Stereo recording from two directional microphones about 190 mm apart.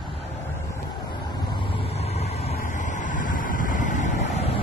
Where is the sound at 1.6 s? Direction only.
30° left (ahead or behind).